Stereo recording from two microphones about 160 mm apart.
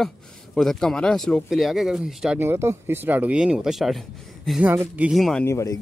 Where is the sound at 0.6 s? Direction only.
5° left (ahead or behind).